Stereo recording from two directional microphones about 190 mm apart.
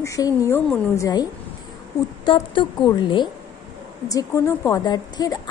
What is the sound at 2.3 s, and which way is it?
A woman's voice, 25° left (ahead or behind).